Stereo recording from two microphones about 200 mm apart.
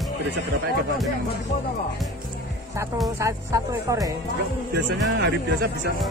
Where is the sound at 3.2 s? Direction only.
15° right (ahead or behind).